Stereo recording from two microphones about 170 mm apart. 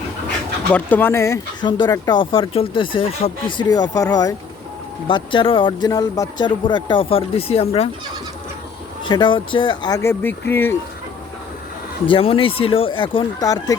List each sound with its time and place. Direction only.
0.7 s speech: 10° left (ahead or behind); by 3.7 s 35° left (ahead or behind)
3.7 s speech: 20° left (ahead or behind)
9.0 s speech: 25° left (ahead or behind)
12.0 s speech: 30° left (ahead or behind)